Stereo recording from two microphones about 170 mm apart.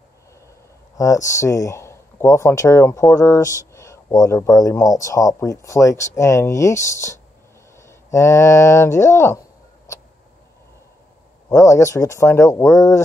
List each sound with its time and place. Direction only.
0.9 s speech: 20° left (ahead or behind)
11.4 s speech: 20° left (ahead or behind)